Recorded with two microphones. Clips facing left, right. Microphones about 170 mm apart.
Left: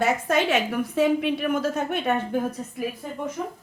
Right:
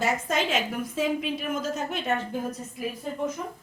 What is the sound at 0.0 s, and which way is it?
A woman's voice, 60° left (ahead or behind).